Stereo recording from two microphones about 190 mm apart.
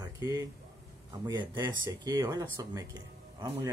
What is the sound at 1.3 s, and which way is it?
Speech, 25° right (ahead or behind).